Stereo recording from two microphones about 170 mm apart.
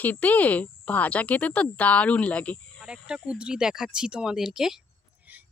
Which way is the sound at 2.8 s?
5° right (ahead or behind).